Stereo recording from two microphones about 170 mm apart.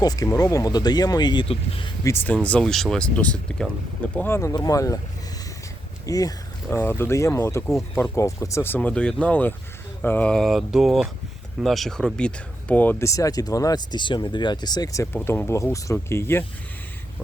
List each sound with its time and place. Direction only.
0.0 s speech: 20° left (ahead or behind)
2.0 s speech: 10° left (ahead or behind)
6.1 s speech: 20° left (ahead or behind)
10.0 s mantra: 10° left (ahead or behind)
11.6 s speech: centre (ahead or behind); by 15.0 s 25° left (ahead or behind)
15.1 s speech: 10° left (ahead or behind)